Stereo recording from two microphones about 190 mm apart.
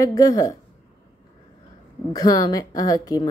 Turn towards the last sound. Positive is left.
turn(degrees=20)  # may be behind; listen again after turning